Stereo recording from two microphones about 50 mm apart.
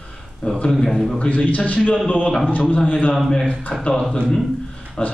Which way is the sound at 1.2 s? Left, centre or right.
Left.